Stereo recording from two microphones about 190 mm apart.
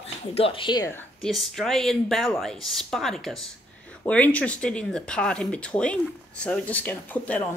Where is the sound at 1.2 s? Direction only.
Centre (ahead or behind).